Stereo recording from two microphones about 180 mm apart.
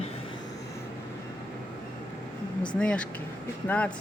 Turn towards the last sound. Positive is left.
turn(degrees=10)  # may be behind; listen again after turning